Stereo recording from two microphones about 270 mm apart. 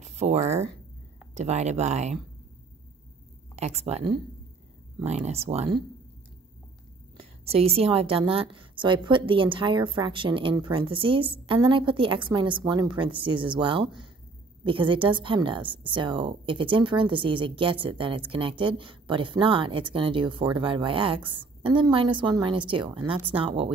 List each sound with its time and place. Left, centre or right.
0.0 s a woman's voice: right
3.5 s a woman's voice: right
7.2 s a woman's voice: right